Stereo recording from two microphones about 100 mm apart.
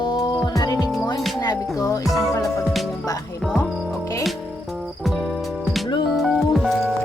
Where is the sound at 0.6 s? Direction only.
40° left (ahead or behind).